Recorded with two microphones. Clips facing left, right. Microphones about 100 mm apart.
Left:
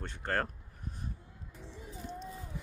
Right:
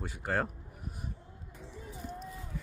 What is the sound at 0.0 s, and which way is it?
Speech, 5° right (ahead or behind).